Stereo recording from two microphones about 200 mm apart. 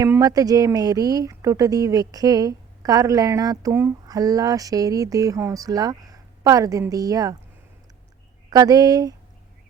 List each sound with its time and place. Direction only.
0.0 s speech: 15° right (ahead or behind)
8.4 s speech: 20° right (ahead or behind)